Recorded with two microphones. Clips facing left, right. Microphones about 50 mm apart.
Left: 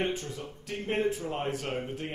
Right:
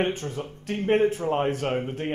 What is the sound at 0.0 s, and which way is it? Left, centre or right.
Speech, right.